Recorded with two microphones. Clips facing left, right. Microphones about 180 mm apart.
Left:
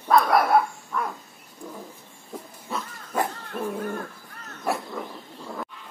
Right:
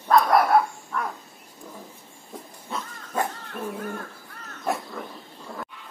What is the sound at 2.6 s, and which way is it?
Dog, centre (ahead or behind).